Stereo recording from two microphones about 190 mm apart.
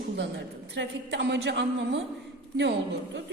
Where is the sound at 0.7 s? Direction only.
70° right (ahead or behind).